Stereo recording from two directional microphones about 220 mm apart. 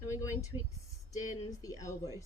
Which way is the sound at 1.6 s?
15° left (ahead or behind).